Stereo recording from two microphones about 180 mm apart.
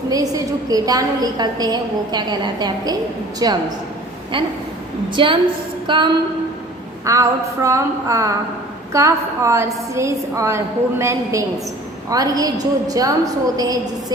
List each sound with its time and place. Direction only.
0.1 s a woman's voice: 20° right (ahead or behind)